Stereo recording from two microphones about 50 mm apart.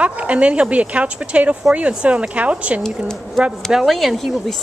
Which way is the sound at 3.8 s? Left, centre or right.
Centre.